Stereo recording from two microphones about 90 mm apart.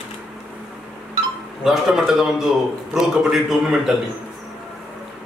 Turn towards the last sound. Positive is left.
turn(degrees=-5)  # may be behind; listen again after turning